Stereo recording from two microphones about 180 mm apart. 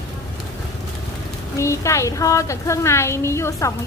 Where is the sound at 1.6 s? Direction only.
15° left (ahead or behind).